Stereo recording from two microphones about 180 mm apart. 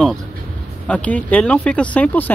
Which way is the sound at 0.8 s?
5° left (ahead or behind).